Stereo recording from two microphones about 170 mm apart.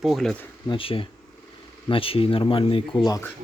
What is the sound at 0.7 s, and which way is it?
Speech, 30° left (ahead or behind).